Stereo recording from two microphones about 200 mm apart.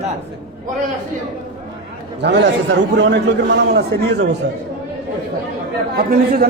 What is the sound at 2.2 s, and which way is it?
A man's voice, 60° right (ahead or behind).